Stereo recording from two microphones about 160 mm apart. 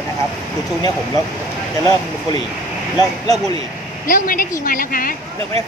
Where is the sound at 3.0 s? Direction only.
25° left (ahead or behind).